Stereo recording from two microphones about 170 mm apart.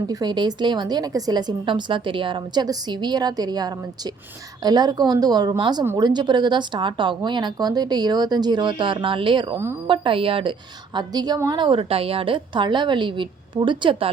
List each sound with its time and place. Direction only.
0.1 s a woman's voice: 25° right (ahead or behind)